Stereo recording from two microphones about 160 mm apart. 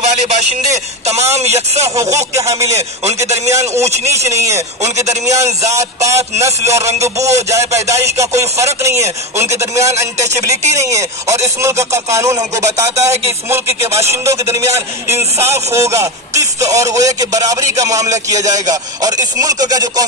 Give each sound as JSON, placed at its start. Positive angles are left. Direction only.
{"t": 0.0, "sound": "speech", "side_deg": -45}
{"t": 1.5, "sound": "music", "side_deg": -20}
{"t": 3.2, "sound": "speech", "side_deg": -20}
{"t": 5.2, "sound": "music", "side_deg": -20}
{"t": 13.5, "sound": "speech", "side_deg": -15}
{"t": 16.7, "sound": "music", "side_deg": -20}